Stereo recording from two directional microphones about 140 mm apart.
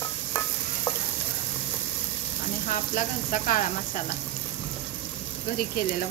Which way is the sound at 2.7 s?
70° left (ahead or behind).